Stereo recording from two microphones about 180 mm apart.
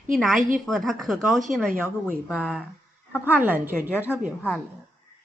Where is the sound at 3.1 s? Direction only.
10° right (ahead or behind).